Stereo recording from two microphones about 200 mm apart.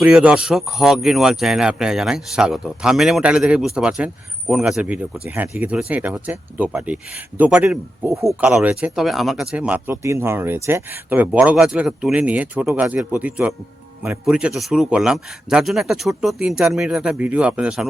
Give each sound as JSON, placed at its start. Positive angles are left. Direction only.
{"t": 0.0, "sound": "a man's voice", "side_deg": -5}
{"t": 8.4, "sound": "a man's voice", "side_deg": -5}